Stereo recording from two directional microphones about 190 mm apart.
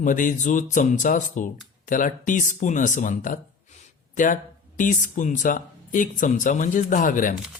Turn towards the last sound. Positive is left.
turn(degrees=45)  # may be behind; listen again after turning